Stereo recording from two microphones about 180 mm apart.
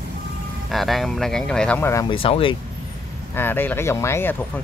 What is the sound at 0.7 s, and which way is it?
Speech, centre (ahead or behind).